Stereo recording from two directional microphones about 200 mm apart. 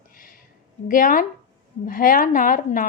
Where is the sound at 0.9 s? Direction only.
40° left (ahead or behind).